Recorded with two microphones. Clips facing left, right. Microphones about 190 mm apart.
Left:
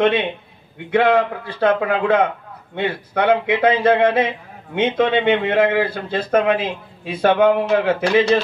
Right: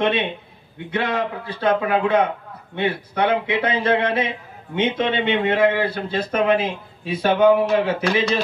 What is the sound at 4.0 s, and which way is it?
Speech, 55° left (ahead or behind).